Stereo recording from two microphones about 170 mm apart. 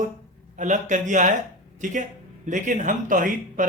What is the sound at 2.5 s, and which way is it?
Speech, 50° right (ahead or behind).